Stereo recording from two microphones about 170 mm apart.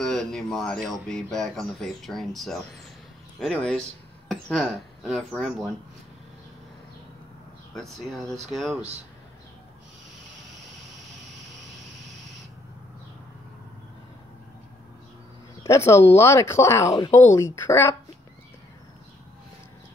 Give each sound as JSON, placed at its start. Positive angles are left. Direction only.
{"t": 0.0, "sound": "speech", "side_deg": 5}
{"t": 7.7, "sound": "speech", "side_deg": 0}
{"t": 15.6, "sound": "speech", "side_deg": 15}